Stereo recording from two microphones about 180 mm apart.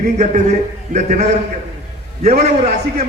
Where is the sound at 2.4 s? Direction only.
40° right (ahead or behind).